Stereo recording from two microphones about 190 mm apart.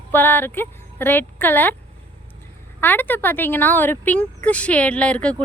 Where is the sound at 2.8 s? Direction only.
10° left (ahead or behind).